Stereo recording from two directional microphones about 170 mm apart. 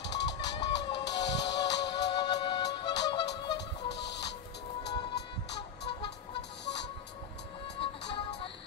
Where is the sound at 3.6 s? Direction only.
90° left.